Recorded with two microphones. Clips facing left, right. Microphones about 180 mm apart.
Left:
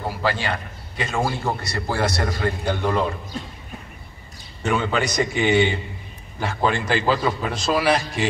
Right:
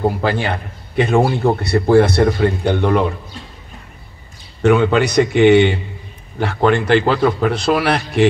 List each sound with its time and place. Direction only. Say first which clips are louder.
0.4 s a man's voice: right 5 dB; 60° right (ahead or behind)
4.6 s a man's voice: right 9 dB; 65° right (ahead or behind)